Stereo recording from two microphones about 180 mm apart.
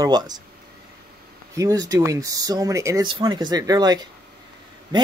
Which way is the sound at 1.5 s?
20° right (ahead or behind).